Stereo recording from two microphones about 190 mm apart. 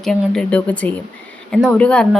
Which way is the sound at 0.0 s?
Centre (ahead or behind).